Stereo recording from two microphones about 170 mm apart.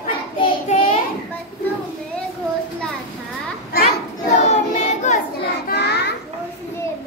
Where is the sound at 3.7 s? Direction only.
65° left (ahead or behind).